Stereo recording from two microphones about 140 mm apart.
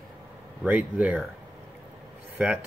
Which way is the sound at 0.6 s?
10° right (ahead or behind).